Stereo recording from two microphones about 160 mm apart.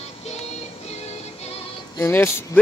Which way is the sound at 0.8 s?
40° left (ahead or behind).